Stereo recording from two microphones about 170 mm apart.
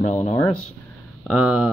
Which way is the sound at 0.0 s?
45° left (ahead or behind).